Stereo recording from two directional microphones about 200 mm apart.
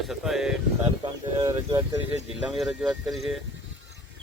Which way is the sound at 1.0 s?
20° right (ahead or behind).